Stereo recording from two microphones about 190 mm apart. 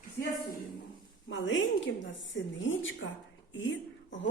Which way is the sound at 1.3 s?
80° left.